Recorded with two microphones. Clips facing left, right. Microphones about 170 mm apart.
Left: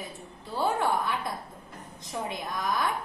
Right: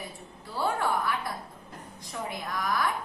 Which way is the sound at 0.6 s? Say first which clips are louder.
Left 1 dB; 20° left (ahead or behind).